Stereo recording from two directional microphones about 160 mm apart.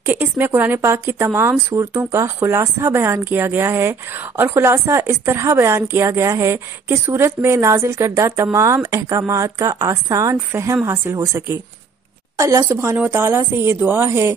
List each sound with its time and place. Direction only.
0.0 s a woman's voice: 10° right (ahead or behind)